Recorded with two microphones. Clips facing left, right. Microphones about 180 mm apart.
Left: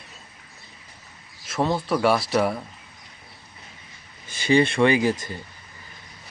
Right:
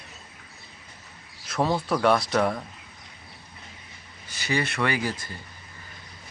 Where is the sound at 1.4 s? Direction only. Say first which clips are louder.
Left 1 dB; centre (ahead or behind).